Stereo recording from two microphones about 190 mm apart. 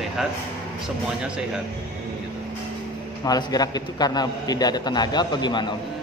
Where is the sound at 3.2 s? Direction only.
20° left (ahead or behind).